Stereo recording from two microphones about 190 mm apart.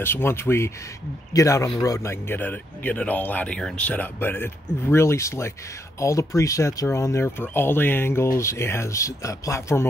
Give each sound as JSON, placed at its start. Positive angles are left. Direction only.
{"t": 0.0, "sound": "speech", "side_deg": 10}